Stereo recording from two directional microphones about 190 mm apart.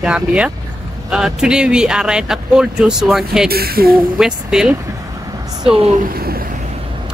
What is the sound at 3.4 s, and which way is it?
Speech, 55° right (ahead or behind).